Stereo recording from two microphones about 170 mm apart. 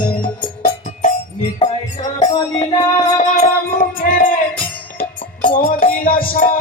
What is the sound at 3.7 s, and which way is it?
Music, 55° left (ahead or behind).